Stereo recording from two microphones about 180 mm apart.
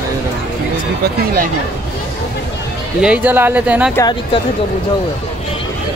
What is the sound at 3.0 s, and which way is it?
Speech, 10° right (ahead or behind).